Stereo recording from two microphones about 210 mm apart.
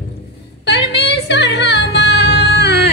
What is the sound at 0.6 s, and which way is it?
Music, 55° left (ahead or behind).